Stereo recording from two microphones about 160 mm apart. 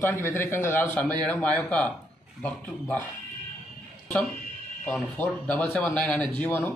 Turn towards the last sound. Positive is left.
turn(degrees=10)  # may be behind; listen again after turning